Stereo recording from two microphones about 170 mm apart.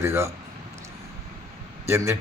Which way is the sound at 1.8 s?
15° right (ahead or behind).